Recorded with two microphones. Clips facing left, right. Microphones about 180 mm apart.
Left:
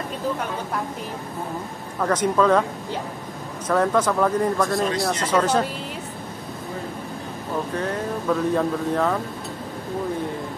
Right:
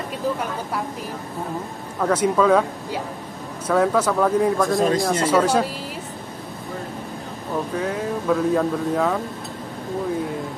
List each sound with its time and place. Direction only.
2.0 s speech: 10° right (ahead or behind)
4.7 s speech: 45° right (ahead or behind)
5.2 s speech: 10° right (ahead or behind)
7.7 s speech: 5° right (ahead or behind)